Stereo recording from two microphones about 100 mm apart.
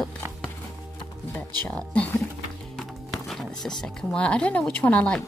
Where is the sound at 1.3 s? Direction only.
15° left (ahead or behind).